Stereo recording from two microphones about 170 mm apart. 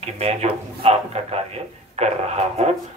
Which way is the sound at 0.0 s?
35° right (ahead or behind).